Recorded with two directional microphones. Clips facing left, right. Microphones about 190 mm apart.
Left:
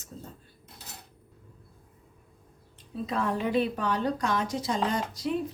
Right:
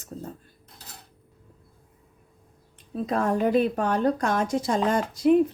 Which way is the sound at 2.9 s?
50° right (ahead or behind).